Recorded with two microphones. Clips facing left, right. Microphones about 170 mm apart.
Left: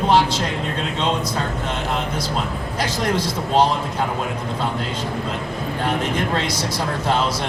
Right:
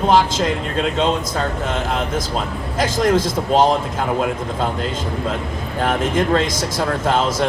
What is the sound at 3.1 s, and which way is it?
Speech, 45° right (ahead or behind).